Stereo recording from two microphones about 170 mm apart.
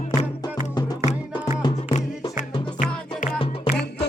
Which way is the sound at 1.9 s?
50° left (ahead or behind).